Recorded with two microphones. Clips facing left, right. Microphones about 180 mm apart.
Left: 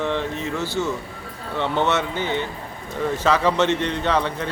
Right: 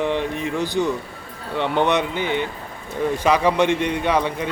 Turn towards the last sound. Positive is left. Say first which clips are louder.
# right 1 dB
turn(degrees=-10)  # may be behind; listen again after turning